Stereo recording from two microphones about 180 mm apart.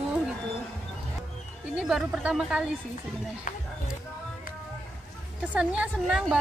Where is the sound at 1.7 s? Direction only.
Centre (ahead or behind).